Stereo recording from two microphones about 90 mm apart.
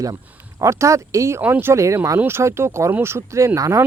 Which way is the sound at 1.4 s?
20° right (ahead or behind).